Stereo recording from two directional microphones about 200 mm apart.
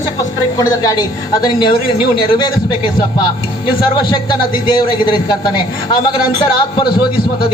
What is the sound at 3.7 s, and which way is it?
A man's voice, 20° left (ahead or behind).